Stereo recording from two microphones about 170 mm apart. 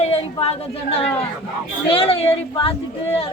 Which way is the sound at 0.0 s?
35° left (ahead or behind).